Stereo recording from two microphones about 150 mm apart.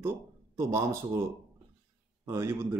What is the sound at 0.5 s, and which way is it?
Speech, 20° right (ahead or behind).